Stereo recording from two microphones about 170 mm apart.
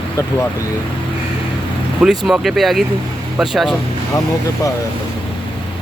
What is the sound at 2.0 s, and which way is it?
Speech, 5° right (ahead or behind).